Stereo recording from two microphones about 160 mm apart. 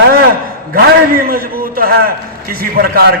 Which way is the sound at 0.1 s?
65° right (ahead or behind).